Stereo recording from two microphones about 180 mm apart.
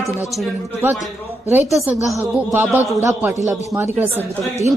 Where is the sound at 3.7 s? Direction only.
15° right (ahead or behind).